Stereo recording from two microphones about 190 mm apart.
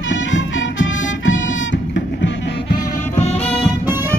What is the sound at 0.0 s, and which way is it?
Music, 75° left (ahead or behind).